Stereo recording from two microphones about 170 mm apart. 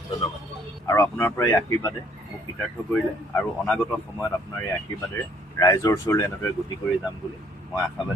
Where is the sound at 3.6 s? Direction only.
Centre (ahead or behind).